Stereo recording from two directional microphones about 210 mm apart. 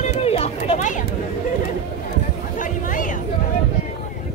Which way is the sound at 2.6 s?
40° left (ahead or behind).